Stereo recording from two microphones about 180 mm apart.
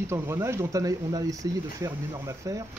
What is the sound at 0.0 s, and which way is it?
Speech, 15° right (ahead or behind).